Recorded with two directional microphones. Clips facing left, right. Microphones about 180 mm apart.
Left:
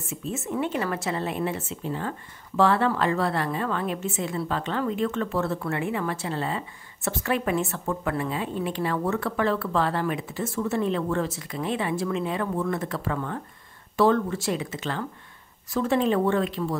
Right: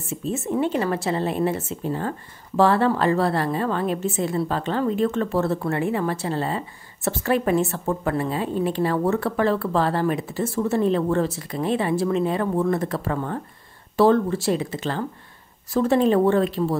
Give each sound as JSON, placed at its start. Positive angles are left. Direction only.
{"t": 0.1, "sound": "speech", "side_deg": -35}